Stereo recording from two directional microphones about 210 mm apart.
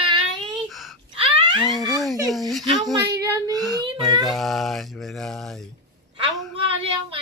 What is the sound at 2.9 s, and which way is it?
Child singing, 15° right (ahead or behind).